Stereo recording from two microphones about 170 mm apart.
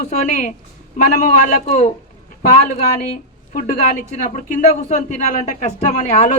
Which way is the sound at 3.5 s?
55° left (ahead or behind).